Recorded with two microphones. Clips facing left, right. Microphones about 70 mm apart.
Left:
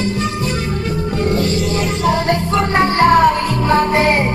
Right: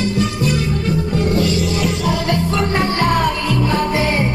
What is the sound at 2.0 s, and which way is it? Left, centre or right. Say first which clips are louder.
Music: left 3 dB; left.